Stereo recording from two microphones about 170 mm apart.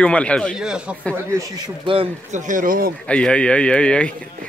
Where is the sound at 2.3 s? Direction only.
50° right (ahead or behind).